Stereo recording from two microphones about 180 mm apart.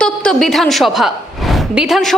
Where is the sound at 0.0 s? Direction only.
Centre (ahead or behind).